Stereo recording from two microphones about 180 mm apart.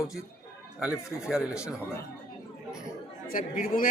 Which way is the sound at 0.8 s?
5° right (ahead or behind).